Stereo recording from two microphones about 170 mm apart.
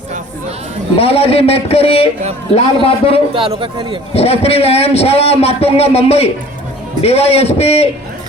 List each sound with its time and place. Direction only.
0.9 s a man's voice: 35° left (ahead or behind)
3.3 s speech: 30° right (ahead or behind)
4.1 s a man's voice: 35° left (ahead or behind)